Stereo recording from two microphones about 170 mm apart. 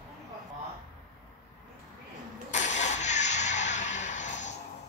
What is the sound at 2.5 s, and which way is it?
Vehicle, 45° left (ahead or behind).